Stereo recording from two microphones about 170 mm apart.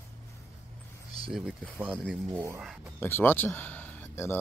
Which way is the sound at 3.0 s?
15° left (ahead or behind).